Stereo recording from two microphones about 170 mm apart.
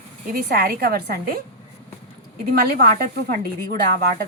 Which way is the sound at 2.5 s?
60° right (ahead or behind).